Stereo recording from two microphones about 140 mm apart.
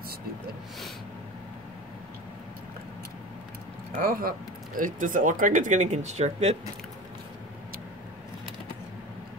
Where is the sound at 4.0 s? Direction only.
90° right; by 6.6 s 50° right (ahead or behind).